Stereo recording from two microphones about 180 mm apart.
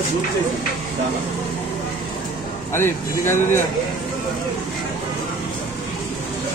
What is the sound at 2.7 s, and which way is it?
Speech, 15° left (ahead or behind).